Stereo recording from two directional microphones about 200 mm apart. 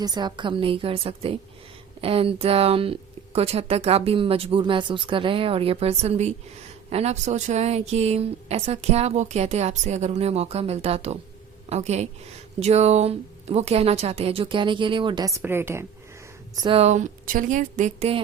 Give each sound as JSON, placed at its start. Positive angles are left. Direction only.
{"t": 0.0, "sound": "a woman's voice", "side_deg": -20}
{"t": 16.6, "sound": "a woman's voice", "side_deg": -25}